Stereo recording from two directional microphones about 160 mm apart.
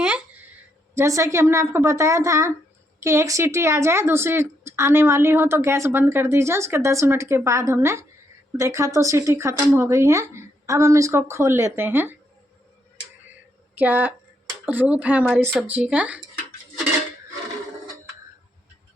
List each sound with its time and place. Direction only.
0.9 s a woman's voice: 20° right (ahead or behind)
13.7 s a woman's voice: 10° right (ahead or behind)